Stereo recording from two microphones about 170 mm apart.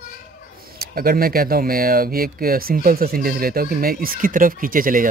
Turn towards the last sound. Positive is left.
turn(degrees=-55)  # may be behind; listen again after turning